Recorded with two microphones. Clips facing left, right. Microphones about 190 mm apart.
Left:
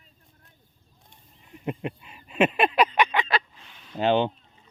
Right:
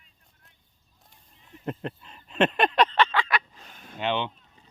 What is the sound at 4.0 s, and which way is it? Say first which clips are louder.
Speech: left 6 dB; 40° left (ahead or behind).